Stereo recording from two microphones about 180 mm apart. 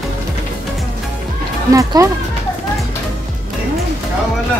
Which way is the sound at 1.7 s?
20° right (ahead or behind).